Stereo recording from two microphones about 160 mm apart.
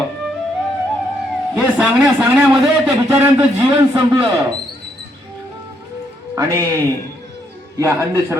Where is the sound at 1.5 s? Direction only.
Centre (ahead or behind).